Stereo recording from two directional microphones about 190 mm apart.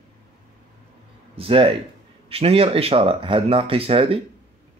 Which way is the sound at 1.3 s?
30° right (ahead or behind).